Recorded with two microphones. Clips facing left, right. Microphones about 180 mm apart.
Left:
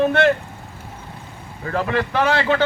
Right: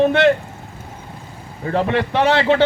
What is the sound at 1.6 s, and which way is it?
A man's voice, 30° right (ahead or behind).